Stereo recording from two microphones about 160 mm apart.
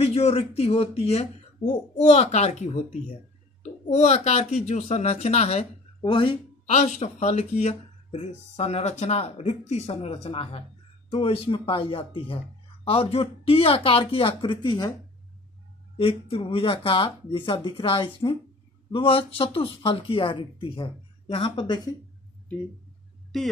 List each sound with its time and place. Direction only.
0.0 s speech: 40° left (ahead or behind)
6.6 s speech: 45° left (ahead or behind); by 14.9 s 30° left (ahead or behind)
16.0 s speech: 35° left (ahead or behind)